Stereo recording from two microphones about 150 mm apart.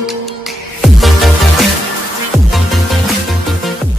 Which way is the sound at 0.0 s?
Centre (ahead or behind).